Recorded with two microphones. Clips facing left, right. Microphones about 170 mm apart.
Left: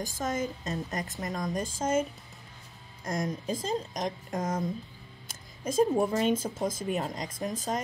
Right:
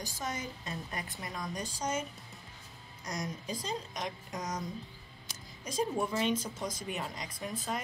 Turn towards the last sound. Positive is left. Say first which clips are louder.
# left 5 dB
turn(degrees=40)  # may be behind; listen again after turning